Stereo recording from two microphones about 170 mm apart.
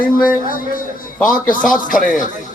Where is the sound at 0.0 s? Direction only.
55° left (ahead or behind).